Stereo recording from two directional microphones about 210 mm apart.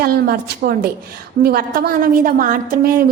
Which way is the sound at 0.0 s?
45° right (ahead or behind).